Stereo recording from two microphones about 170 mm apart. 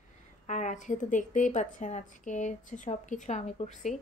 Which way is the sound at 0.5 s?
45° left (ahead or behind).